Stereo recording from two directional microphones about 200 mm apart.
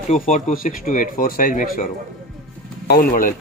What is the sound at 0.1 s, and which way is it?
Speech, 40° left (ahead or behind).